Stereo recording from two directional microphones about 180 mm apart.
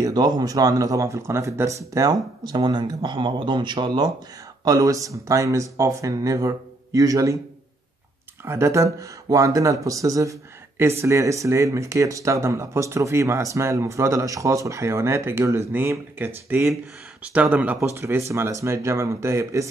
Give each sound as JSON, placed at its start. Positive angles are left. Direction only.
{"t": 0.0, "sound": "speech", "side_deg": -20}
{"t": 8.5, "sound": "speech", "side_deg": -15}